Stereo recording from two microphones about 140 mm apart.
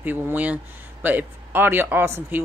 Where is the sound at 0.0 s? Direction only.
10° right (ahead or behind).